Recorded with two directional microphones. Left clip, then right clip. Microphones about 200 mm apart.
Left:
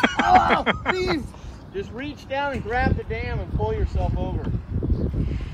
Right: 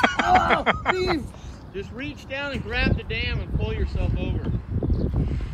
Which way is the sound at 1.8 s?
25° left (ahead or behind).